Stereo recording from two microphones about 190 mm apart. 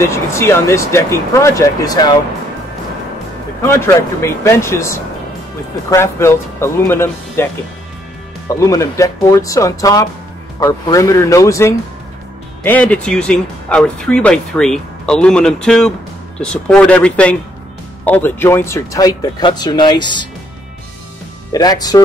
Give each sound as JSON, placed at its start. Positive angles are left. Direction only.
{"t": 0.0, "sound": "speech", "side_deg": 15}
{"t": 3.6, "sound": "speech", "side_deg": 15}
{"t": 8.5, "sound": "speech", "side_deg": 15}
{"t": 21.5, "sound": "speech", "side_deg": 20}